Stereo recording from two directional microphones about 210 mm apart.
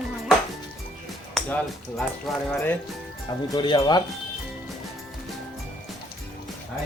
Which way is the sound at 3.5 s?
20° left (ahead or behind).